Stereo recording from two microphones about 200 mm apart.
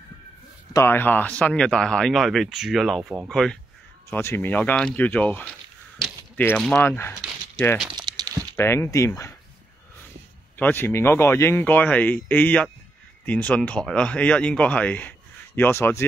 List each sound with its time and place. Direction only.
0.7 s speech: 10° left (ahead or behind)
7.2 s a sound: centre (ahead or behind)
7.9 s crumpling: 20° right (ahead or behind)
8.5 s speech: 15° left (ahead or behind)
10.6 s speech: 10° left (ahead or behind)